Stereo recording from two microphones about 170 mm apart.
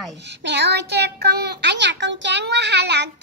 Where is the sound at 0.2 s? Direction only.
90° right.